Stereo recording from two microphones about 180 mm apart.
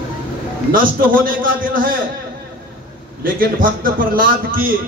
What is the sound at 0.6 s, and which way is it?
A man's voice, 55° right (ahead or behind).